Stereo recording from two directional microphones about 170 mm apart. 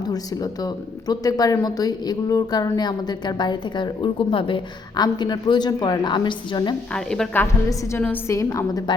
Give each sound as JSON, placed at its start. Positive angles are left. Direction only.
{"t": 0.0, "sound": "speech", "side_deg": 25}
{"t": 6.9, "sound": "a woman's voice", "side_deg": 5}